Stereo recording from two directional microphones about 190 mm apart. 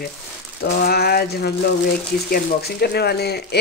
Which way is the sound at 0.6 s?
55° left (ahead or behind).